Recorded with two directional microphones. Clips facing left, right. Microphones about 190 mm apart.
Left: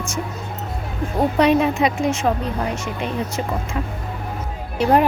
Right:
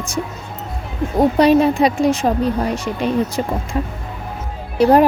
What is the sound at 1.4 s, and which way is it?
Speech, 35° right (ahead or behind).